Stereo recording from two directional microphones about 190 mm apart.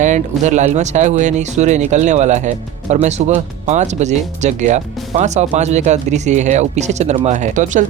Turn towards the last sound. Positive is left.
turn(degrees=-40)  # may be behind; listen again after turning